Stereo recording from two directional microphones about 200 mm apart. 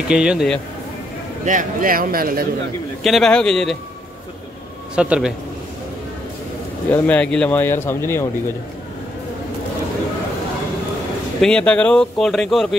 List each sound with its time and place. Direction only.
0.1 s speech: 5° right (ahead or behind)
1.4 s speech: 40° right (ahead or behind)
3.0 s speech: centre (ahead or behind)
4.9 s speech: 5° right (ahead or behind)
6.9 s speech: 10° left (ahead or behind)
11.4 s speech: 5° left (ahead or behind)